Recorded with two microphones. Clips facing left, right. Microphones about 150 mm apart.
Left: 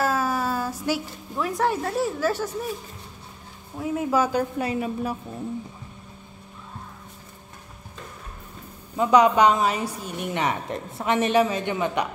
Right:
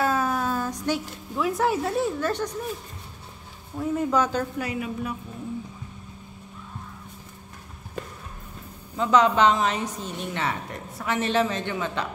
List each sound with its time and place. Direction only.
0.0 s a sound: 5° left (ahead or behind)
3.7 s a woman's voice: 5° left (ahead or behind)
4.6 s a woman's voice: 30° left (ahead or behind)
8.9 s a woman's voice: 15° left (ahead or behind)